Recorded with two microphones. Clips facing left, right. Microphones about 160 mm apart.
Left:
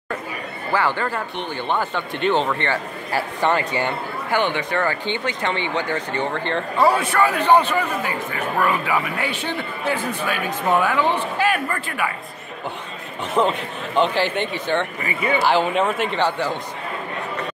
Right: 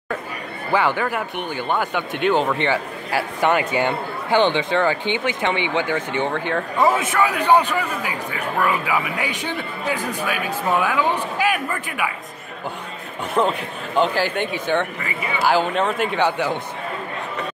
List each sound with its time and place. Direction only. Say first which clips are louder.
0.7 s a man's voice: right 2 dB; 15° right (ahead or behind)
4.4 s a man's voice: right 4 dB; 25° right (ahead or behind); by 12.1 s 10° right (ahead or behind)
13.3 s speech: even; 5° right (ahead or behind)